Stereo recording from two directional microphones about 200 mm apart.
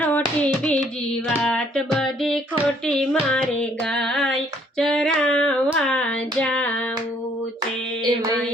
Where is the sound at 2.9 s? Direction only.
5° left (ahead or behind).